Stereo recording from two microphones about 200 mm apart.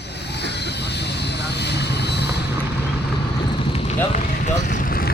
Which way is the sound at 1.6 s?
55° left (ahead or behind).